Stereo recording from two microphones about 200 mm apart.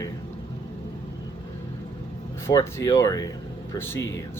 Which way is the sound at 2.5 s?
15° left (ahead or behind).